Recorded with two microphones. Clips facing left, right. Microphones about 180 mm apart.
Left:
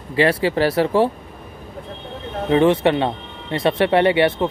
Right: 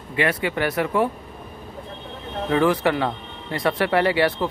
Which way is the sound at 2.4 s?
25° left (ahead or behind).